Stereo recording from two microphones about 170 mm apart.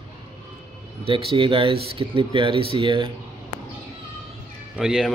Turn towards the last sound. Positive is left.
turn(degrees=-5)  # may be behind; listen again after turning